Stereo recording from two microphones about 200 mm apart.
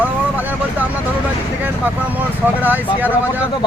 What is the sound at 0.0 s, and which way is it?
Vehicle, 10° right (ahead or behind).